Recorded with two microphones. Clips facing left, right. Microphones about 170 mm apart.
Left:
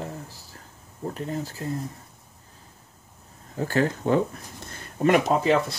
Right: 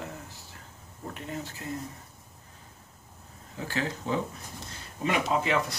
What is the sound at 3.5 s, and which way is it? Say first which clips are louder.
Speech: left 8 dB; 45° left (ahead or behind).